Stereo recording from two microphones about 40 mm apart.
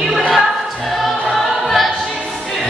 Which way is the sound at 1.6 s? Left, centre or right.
Centre.